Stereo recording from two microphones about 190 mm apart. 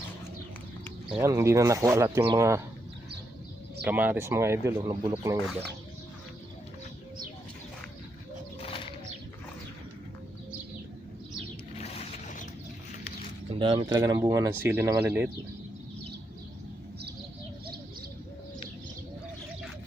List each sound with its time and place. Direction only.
1.2 s speech: 15° right (ahead or behind)
3.8 s speech: 10° right (ahead or behind)
8.6 s bird: 30° left (ahead or behind)
11.7 s a sound: 35° left (ahead or behind)
13.5 s speech: 30° right (ahead or behind); by 15.3 s 10° right (ahead or behind)